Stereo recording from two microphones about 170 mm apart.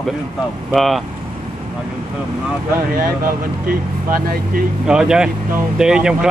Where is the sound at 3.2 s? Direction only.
60° right (ahead or behind).